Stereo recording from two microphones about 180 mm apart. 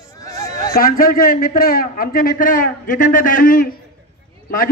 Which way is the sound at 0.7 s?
55° left (ahead or behind).